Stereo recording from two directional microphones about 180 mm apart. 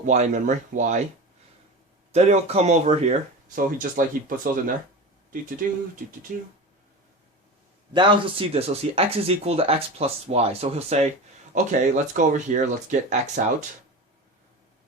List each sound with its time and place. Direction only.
0.0 s speech: 40° right (ahead or behind)
2.1 s speech: 35° right (ahead or behind)
5.6 s speech: 50° right (ahead or behind)
7.9 s speech: 30° right (ahead or behind); by 13.7 s 45° right (ahead or behind)